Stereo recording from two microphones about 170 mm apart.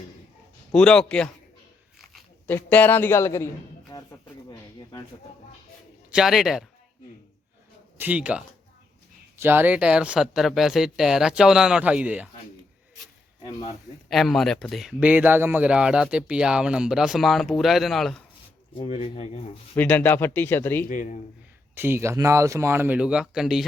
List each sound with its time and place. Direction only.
0.7 s speech: 5° left (ahead or behind)
2.5 s speech: 10° left (ahead or behind)
3.9 s a sound: 20° left (ahead or behind)
6.1 s speech: 5° right (ahead or behind)
7.9 s speech: 10° right (ahead or behind)
14.1 s speech: centre (ahead or behind)
18.8 s speech: 35° left (ahead or behind)
19.7 s speech: 10° left (ahead or behind)
20.8 s a man's voice: 50° left (ahead or behind)
21.8 s speech: 15° right (ahead or behind)